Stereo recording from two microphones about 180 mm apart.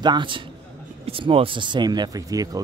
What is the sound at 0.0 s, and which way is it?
Speech, 25° right (ahead or behind).